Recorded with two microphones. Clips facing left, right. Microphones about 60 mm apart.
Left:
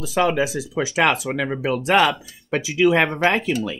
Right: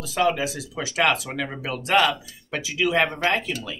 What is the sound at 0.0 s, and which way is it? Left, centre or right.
Speech, centre.